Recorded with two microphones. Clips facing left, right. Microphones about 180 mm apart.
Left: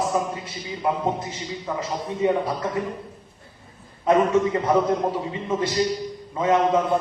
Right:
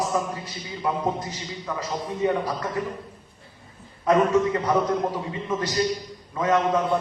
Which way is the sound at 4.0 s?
20° left (ahead or behind).